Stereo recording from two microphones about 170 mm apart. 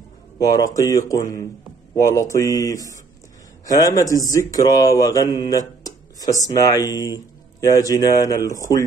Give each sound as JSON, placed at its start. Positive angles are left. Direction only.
{"t": 0.4, "sound": "speech", "side_deg": 20}